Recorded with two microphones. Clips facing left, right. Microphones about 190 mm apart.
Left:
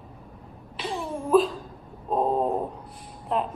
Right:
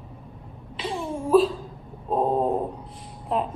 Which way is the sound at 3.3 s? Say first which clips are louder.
Right 1 dB; centre (ahead or behind).